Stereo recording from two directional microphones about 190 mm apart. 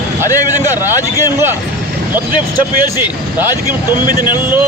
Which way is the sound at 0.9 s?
15° left (ahead or behind).